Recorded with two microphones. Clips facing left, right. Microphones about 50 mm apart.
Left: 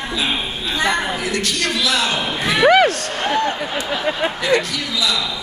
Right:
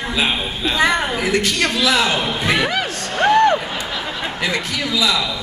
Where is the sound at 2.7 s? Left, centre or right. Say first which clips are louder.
Left 10 dB; left.